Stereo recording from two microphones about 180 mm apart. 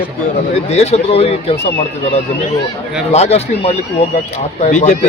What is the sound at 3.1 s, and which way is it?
Speech, 35° left (ahead or behind).